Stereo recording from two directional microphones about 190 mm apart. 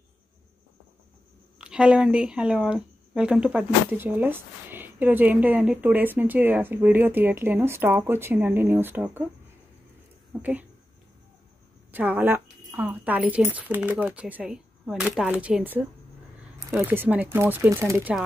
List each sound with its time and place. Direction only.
1.6 s speech: 5° right (ahead or behind)
10.4 s speech: 10° right (ahead or behind)
11.9 s speech: 10° right (ahead or behind)